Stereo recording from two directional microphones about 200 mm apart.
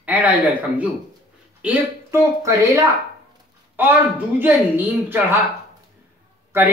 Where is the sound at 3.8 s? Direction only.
10° right (ahead or behind).